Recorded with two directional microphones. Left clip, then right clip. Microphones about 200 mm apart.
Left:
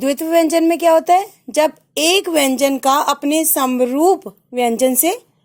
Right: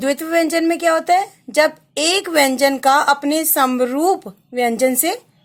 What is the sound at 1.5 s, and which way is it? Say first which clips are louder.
A woman's voice: even; 25° left (ahead or behind).